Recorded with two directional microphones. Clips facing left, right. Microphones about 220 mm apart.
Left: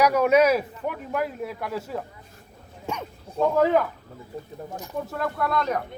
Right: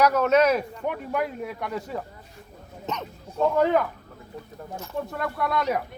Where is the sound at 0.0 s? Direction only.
10° left (ahead or behind).